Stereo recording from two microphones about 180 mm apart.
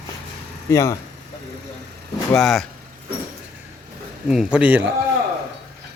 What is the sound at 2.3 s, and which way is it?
Speech, centre (ahead or behind).